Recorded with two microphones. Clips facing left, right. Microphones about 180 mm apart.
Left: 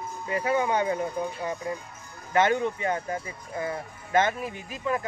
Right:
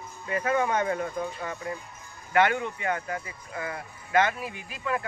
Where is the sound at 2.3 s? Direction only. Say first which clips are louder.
Left 1 dB; 35° left (ahead or behind).